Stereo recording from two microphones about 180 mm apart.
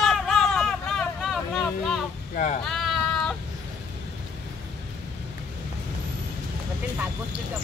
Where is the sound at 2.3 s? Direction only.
40° left (ahead or behind).